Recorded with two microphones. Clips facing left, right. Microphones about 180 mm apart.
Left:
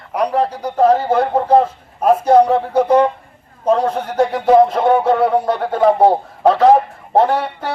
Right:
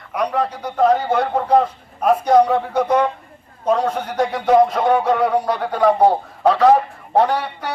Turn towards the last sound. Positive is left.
turn(degrees=30)  # may be behind; listen again after turning